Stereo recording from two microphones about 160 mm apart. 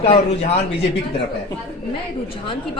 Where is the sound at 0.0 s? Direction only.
40° left (ahead or behind).